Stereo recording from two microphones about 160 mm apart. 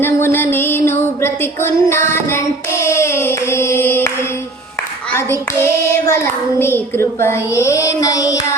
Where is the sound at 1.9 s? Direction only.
15° left (ahead or behind).